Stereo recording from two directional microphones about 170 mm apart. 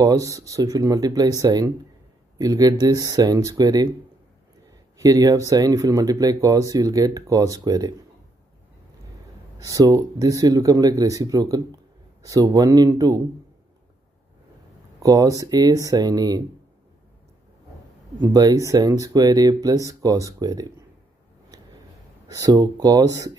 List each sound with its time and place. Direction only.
0.0 s speech: 20° right (ahead or behind)
4.9 s speech: 20° right (ahead or behind)
9.6 s speech: 20° right (ahead or behind)
15.0 s speech: 20° right (ahead or behind)
18.2 s speech: 20° right (ahead or behind)
22.3 s speech: 20° right (ahead or behind)